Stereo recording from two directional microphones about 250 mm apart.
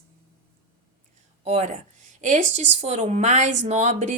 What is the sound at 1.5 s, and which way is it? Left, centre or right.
A woman's voice, right.